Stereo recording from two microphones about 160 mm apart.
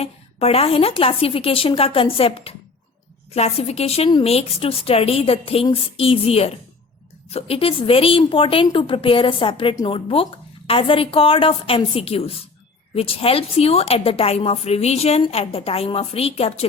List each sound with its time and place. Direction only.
0.0 s a woman's voice: 40° left (ahead or behind)